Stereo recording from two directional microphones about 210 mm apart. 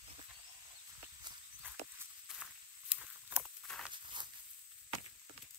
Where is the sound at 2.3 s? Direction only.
5° right (ahead or behind).